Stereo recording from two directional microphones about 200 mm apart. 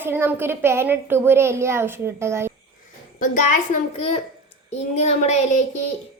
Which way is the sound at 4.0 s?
30° left (ahead or behind).